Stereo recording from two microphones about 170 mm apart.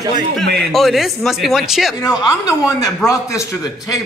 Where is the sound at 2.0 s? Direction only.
20° left (ahead or behind).